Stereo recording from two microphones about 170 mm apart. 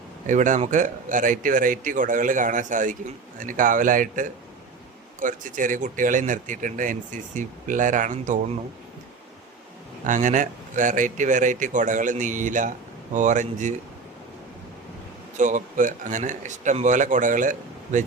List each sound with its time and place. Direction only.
0.3 s speech: 50° right (ahead or behind)
10.0 s speech: 50° right (ahead or behind)
15.4 s speech: 45° right (ahead or behind)